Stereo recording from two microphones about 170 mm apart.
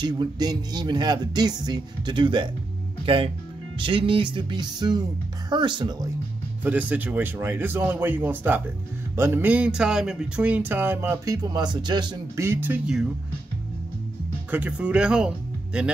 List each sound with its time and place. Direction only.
0.0 s speech: 25° right (ahead or behind)
6.6 s speech: 10° right (ahead or behind); by 12.4 s 25° right (ahead or behind)
12.4 s speech: 10° right (ahead or behind)
14.5 s speech: 10° right (ahead or behind)